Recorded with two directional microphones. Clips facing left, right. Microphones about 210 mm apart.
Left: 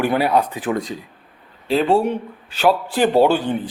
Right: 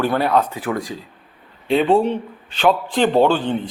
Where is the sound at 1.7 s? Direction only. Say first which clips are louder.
Right 1 dB; centre (ahead or behind).